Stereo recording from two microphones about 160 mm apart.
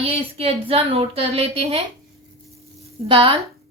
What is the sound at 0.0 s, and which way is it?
A woman's voice, 40° right (ahead or behind).